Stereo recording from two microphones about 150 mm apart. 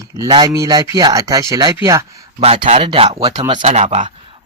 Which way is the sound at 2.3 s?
40° right (ahead or behind).